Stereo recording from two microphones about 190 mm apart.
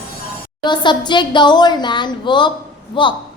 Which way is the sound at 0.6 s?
25° left (ahead or behind).